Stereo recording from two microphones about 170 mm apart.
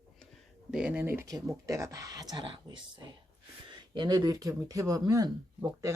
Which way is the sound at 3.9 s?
25° right (ahead or behind).